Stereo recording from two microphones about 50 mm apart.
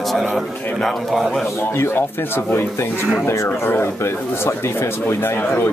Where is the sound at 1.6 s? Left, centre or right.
Left.